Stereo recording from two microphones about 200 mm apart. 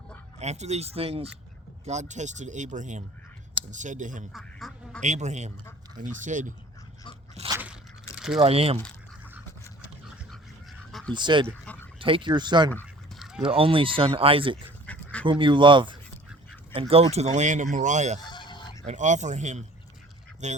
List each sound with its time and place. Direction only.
0.3 s speech: 35° right (ahead or behind)
4.3 s quack: centre (ahead or behind)
5.0 s speech: 35° right (ahead or behind)
7.3 s crunch: 25° right (ahead or behind)
8.4 s speech: 30° right (ahead or behind)
11.1 s speech: 25° right (ahead or behind)
11.4 s dog: 5° left (ahead or behind)
11.9 s speech: 25° right (ahead or behind)
12.7 s duck: centre (ahead or behind)
13.5 s speech: 25° right (ahead or behind)
14.8 s dog: 5° left (ahead or behind)
15.3 s speech: 25° right (ahead or behind)
18.3 s a sound: 20° left (ahead or behind)
18.9 s speech: 35° right (ahead or behind)